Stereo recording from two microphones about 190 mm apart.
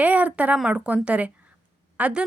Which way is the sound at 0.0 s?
10° right (ahead or behind).